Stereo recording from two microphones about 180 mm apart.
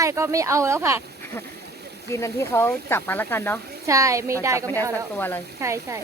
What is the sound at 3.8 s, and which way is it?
Speech, 15° right (ahead or behind).